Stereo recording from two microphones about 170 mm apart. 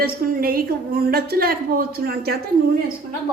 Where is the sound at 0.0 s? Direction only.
60° right (ahead or behind).